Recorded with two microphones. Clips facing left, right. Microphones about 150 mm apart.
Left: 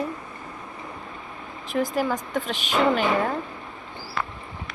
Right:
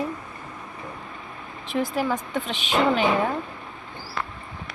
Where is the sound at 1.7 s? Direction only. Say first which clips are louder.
Even; 10° left (ahead or behind).